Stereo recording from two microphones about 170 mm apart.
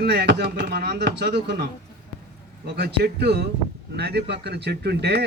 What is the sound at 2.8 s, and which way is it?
Speech, 70° right (ahead or behind).